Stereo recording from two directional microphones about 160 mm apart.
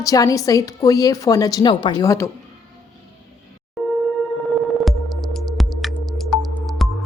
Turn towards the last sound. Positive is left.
turn(degrees=0)  # may be behind; listen again after turning